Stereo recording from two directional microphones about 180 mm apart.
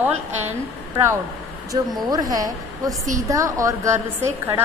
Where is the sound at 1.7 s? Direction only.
20° right (ahead or behind).